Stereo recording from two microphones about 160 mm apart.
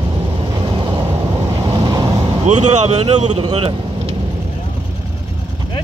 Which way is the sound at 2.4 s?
45° right (ahead or behind).